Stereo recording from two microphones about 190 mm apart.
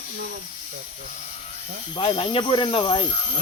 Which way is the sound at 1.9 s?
30° left (ahead or behind).